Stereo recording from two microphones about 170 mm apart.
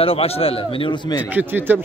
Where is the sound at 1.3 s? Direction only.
10° right (ahead or behind).